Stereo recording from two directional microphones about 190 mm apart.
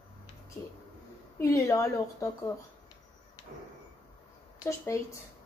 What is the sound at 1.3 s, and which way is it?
Speech, 15° left (ahead or behind).